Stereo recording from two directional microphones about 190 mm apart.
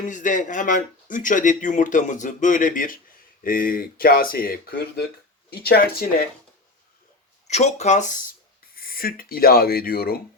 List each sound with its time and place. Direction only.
0.0 s speech: 40° left (ahead or behind)
7.4 s speech: 35° left (ahead or behind); by 10.2 s 50° left (ahead or behind)